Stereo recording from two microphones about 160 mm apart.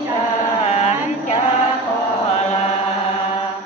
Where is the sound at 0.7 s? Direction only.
45° left (ahead or behind).